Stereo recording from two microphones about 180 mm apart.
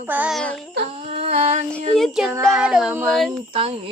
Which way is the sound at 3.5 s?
35° right (ahead or behind).